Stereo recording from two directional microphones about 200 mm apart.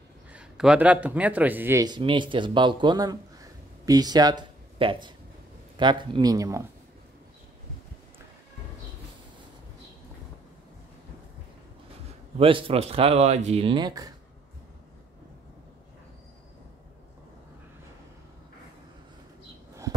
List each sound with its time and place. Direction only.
0.3 s a man's voice: 5° right (ahead or behind)
12.4 s speech: 25° right (ahead or behind)